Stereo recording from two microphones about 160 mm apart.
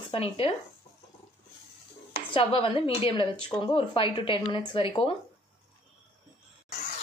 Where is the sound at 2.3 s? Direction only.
35° left (ahead or behind).